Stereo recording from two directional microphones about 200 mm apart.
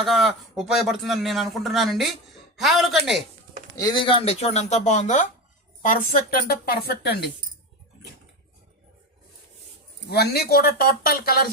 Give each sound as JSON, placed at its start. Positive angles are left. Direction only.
{"t": 0.0, "sound": "a man's voice", "side_deg": 0}
{"t": 3.8, "sound": "a woman's voice", "side_deg": 20}
{"t": 10.1, "sound": "a woman's voice", "side_deg": 55}